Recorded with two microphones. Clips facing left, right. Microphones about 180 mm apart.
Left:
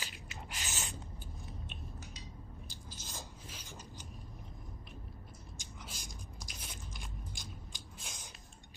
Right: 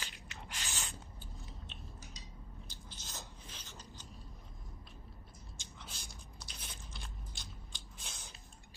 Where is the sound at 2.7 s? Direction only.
20° right (ahead or behind).